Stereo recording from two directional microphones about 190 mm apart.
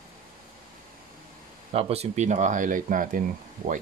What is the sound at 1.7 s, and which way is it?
Speech, 35° right (ahead or behind).